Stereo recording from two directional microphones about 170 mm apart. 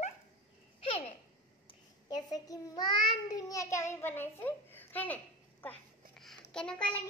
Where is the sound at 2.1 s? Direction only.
25° left (ahead or behind).